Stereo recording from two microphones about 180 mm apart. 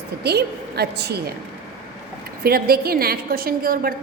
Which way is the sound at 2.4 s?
55° right (ahead or behind).